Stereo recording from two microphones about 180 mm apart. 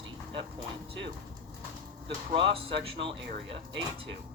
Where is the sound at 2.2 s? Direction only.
30° right (ahead or behind).